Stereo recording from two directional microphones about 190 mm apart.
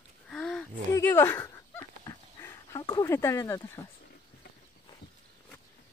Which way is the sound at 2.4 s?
15° left (ahead or behind).